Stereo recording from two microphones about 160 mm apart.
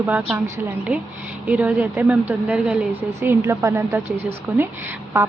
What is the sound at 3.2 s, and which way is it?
A woman's voice, 15° right (ahead or behind).